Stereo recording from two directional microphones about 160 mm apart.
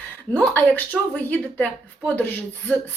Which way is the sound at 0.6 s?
10° left (ahead or behind).